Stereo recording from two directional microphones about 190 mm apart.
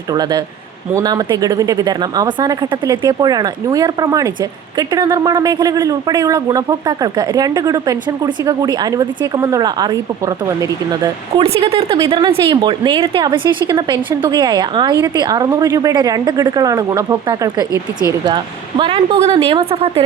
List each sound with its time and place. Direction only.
0.1 s speech: 20° right (ahead or behind)
11.4 s speech: 30° right (ahead or behind)
18.8 s speech: 25° right (ahead or behind)